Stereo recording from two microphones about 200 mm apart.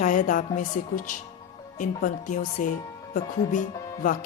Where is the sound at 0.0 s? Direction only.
40° left (ahead or behind).